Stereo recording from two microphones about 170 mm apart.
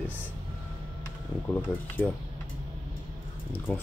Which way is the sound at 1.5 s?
10° left (ahead or behind).